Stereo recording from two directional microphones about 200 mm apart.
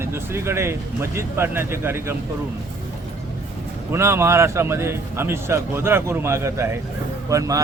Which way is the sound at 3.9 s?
15° right (ahead or behind).